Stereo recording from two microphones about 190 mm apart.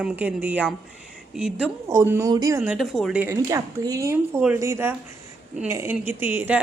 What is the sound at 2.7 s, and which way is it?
A woman's voice, centre (ahead or behind).